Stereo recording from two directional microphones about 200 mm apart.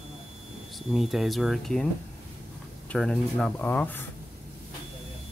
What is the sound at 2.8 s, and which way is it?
Speech, 5° left (ahead or behind).